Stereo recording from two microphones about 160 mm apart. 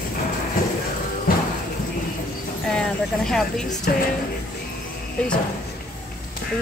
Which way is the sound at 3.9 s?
65° left (ahead or behind).